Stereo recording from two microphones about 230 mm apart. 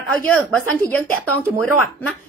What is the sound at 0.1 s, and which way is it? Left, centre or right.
Speech, centre.